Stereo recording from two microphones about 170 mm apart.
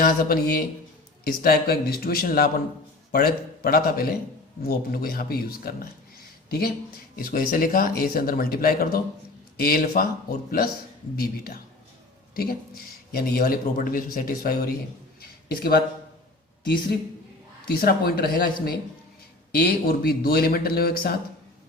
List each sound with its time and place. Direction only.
0.0 s speech: 55° left (ahead or behind)
15.2 s a sound: 65° left (ahead or behind)
17.7 s speech: 60° left (ahead or behind)